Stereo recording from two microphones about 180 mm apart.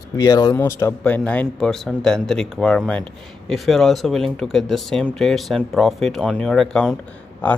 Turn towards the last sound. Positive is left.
turn(degrees=10)  # may be behind; listen again after turning